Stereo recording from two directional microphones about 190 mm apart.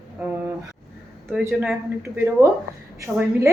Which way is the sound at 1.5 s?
Centre (ahead or behind).